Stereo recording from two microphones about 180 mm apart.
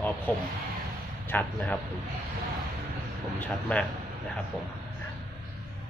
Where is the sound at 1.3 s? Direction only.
10° left (ahead or behind).